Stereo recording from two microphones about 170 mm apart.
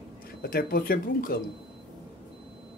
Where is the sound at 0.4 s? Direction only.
60° left (ahead or behind).